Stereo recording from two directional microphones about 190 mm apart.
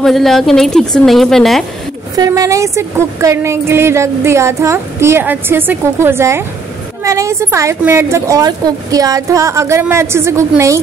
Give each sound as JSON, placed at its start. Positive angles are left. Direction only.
{"t": 0.0, "sound": "a woman's voice", "side_deg": 0}
{"t": 2.1, "sound": "a woman's voice", "side_deg": -20}